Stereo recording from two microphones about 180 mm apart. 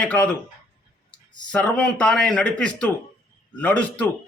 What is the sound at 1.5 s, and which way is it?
A man's voice, 5° left (ahead or behind).